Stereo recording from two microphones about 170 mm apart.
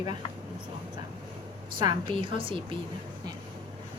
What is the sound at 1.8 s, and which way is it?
Speech, 30° right (ahead or behind).